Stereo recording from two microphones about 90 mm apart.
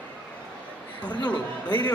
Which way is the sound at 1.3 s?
15° left (ahead or behind).